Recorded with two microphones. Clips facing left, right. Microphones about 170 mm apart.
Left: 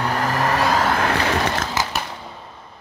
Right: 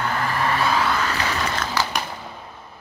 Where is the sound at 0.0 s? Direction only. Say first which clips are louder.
Left 2 dB; 40° left (ahead or behind); by 1.4 s 55° left (ahead or behind).